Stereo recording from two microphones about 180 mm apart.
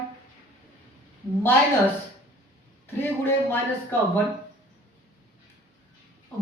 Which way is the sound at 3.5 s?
10° left (ahead or behind).